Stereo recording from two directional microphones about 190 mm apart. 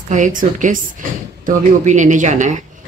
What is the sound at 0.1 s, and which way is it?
Speech, 45° right (ahead or behind).